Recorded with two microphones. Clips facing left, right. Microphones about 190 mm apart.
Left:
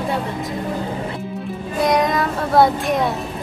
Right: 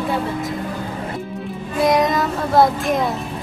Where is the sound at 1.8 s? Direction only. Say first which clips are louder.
Right 1 dB; centre (ahead or behind).